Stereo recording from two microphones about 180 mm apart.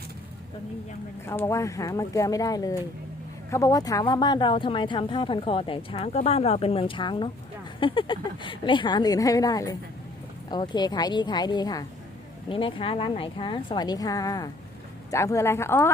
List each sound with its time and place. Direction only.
1.3 s speech: 15° left (ahead or behind)